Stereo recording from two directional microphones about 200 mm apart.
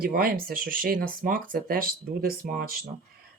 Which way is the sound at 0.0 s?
45° right (ahead or behind).